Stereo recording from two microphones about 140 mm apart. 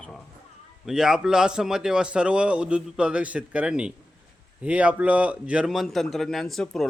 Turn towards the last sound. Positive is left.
turn(degrees=0)  # may be behind; listen again after turning